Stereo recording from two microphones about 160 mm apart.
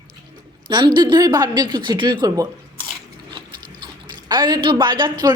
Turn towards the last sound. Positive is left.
turn(degrees=-30)  # may be behind; listen again after turning